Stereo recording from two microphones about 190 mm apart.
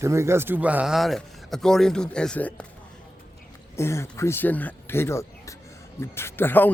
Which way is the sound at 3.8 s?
15° left (ahead or behind).